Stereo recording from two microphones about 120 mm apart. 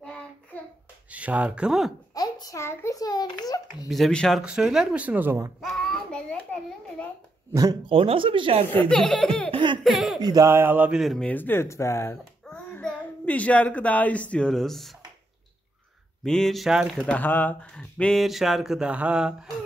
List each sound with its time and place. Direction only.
1.1 s speech: 10° right (ahead or behind)
2.1 s a sound: 30° left (ahead or behind)
3.9 s speech: 5° left (ahead or behind); by 5.5 s 20° right (ahead or behind)
5.6 s a sound: centre (ahead or behind)
7.8 s speech: 50° right (ahead or behind)
8.7 s speech: 5° left (ahead or behind)
9.5 s laughter: 40° right (ahead or behind)
9.8 s a sound: centre (ahead or behind)
10.2 s speech: 30° right (ahead or behind)
10.9 s speech: centre (ahead or behind)
11.2 s speech: 15° left (ahead or behind)
12.8 s speech: 10° left (ahead or behind)
16.3 s speech: 5° left (ahead or behind)
17.0 s speech: 10° left (ahead or behind); by 19.3 s 10° right (ahead or behind)